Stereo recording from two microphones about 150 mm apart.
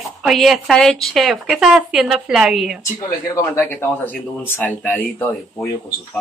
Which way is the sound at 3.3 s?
15° left (ahead or behind).